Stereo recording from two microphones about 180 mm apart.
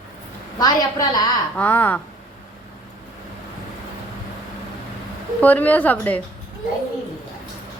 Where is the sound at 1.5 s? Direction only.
10° left (ahead or behind).